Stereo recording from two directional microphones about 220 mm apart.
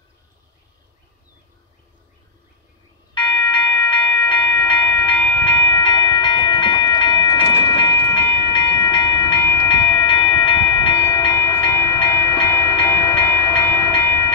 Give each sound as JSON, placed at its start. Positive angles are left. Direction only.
{"t": 3.2, "sound": "train", "side_deg": 20}